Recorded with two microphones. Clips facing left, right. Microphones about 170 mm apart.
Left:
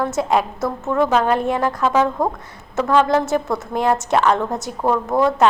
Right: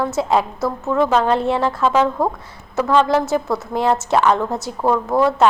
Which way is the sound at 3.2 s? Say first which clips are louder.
Right 1 dB; 20° left (ahead or behind).